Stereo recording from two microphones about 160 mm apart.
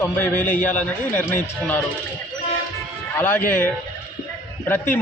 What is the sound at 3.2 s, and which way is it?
Speech, 10° left (ahead or behind).